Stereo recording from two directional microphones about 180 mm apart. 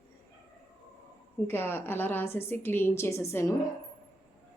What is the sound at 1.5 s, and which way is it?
A woman's voice, 10° left (ahead or behind).